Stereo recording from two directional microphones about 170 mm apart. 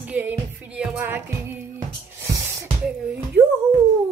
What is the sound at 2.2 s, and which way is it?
Music, 15° right (ahead or behind).